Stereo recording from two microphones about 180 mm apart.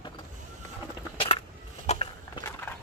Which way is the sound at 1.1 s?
30° left (ahead or behind).